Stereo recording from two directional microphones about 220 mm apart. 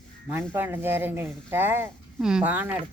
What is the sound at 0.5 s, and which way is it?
Speech, 10° right (ahead or behind).